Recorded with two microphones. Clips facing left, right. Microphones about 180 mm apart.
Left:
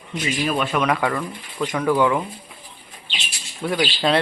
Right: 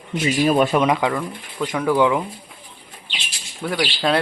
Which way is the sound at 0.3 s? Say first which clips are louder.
Right 6 dB; 40° right (ahead or behind).